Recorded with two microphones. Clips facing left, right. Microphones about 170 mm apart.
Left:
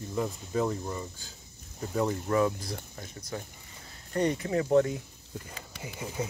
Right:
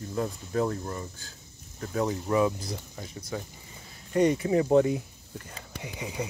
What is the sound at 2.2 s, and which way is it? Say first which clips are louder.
Speech: right 2 dB; 10° right (ahead or behind).